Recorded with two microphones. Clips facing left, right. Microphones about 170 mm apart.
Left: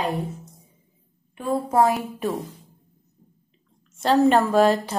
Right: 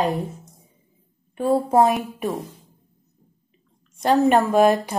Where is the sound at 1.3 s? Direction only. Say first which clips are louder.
Right 5 dB; 35° right (ahead or behind).